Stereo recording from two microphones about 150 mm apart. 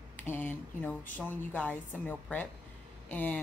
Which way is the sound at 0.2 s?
10° left (ahead or behind).